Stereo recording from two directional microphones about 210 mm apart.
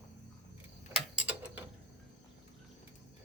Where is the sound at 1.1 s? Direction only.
5° right (ahead or behind).